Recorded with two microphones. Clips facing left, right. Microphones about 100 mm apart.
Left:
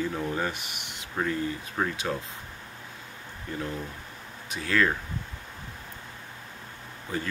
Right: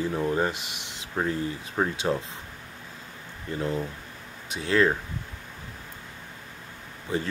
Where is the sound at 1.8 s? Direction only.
25° right (ahead or behind).